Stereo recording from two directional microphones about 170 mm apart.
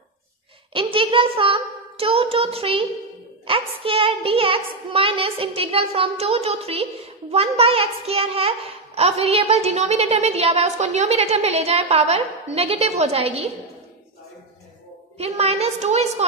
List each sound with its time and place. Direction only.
0.7 s a sound: 30° right (ahead or behind)
3.4 s a woman's voice: 30° right (ahead or behind)
15.1 s a woman's voice: 40° right (ahead or behind)